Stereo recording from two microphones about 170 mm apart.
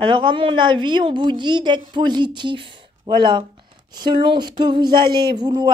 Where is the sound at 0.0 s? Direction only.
30° right (ahead or behind).